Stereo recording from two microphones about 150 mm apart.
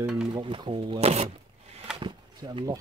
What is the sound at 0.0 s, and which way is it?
Speech, 5° right (ahead or behind).